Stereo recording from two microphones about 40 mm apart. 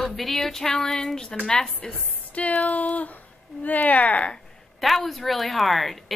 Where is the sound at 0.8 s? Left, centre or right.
Centre; by 2.5 s left.